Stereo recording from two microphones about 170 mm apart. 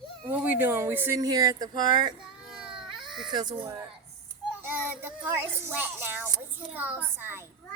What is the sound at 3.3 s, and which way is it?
Speech, 25° right (ahead or behind).